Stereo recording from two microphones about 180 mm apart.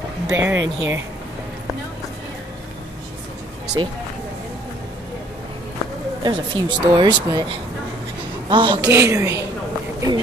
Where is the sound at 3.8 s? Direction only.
25° right (ahead or behind).